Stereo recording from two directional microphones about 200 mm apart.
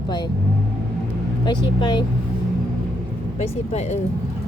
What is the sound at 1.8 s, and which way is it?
Speech, 20° left (ahead or behind).